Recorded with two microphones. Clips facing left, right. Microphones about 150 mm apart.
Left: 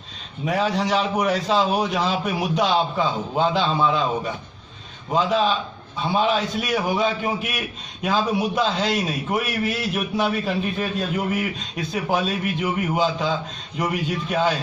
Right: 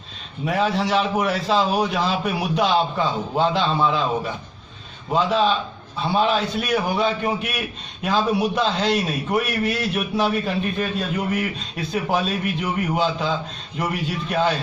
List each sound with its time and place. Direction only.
0.5 s a man's voice: centre (ahead or behind)